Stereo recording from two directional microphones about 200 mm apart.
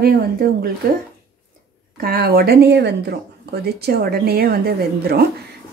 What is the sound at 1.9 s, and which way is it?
Speech, 50° right (ahead or behind).